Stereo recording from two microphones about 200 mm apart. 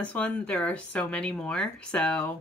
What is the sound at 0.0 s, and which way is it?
A woman's voice, 5° left (ahead or behind).